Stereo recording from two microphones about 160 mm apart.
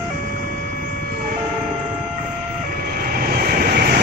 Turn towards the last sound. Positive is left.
turn(degrees=-75)  # may be behind; listen again after turning